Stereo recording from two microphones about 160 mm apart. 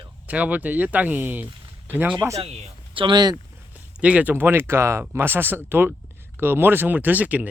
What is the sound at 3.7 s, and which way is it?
Speech, 10° right (ahead or behind).